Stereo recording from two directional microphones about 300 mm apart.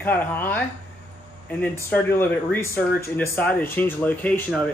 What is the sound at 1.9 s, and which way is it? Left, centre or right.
Speech, centre.